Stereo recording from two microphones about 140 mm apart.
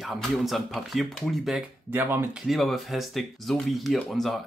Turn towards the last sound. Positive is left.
turn(degrees=0)  # may be behind; listen again after turning